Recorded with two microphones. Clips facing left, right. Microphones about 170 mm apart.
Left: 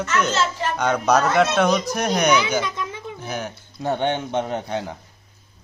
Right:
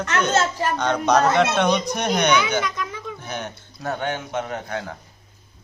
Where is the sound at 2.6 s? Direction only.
25° left (ahead or behind).